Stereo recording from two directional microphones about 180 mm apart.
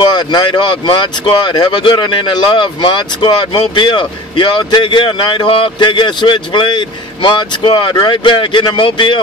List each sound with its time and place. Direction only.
0.1 s speech: 25° left (ahead or behind)